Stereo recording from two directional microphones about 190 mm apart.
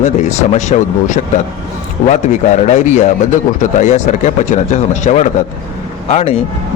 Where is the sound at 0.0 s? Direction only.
40° left (ahead or behind).